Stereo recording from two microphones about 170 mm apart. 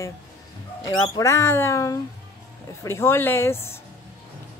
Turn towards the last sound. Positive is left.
turn(degrees=15)  # may be behind; listen again after turning